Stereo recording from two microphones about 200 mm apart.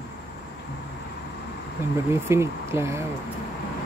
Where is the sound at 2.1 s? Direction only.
10° right (ahead or behind).